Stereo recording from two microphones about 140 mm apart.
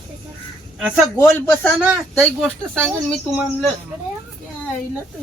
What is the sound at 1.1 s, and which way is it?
Speech, 10° left (ahead or behind).